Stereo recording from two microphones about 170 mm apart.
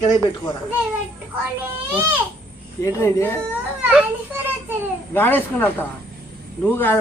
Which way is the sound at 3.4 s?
5° right (ahead or behind).